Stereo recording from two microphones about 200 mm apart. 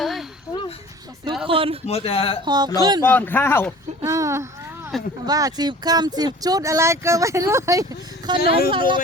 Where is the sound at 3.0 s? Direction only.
10° left (ahead or behind).